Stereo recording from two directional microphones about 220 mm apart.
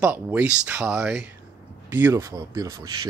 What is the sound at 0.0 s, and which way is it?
Speech, 10° right (ahead or behind).